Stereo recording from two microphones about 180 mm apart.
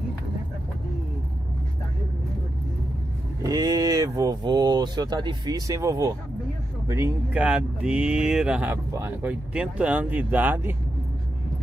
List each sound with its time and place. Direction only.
3.4 s speech: 20° right (ahead or behind)